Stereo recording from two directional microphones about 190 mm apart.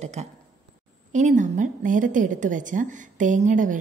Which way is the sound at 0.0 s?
35° right (ahead or behind).